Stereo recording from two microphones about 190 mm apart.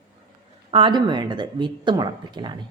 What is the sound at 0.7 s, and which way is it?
Speech, 25° right (ahead or behind).